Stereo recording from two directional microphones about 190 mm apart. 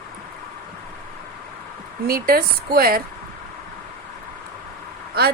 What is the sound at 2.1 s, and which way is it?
Speech, 50° right (ahead or behind).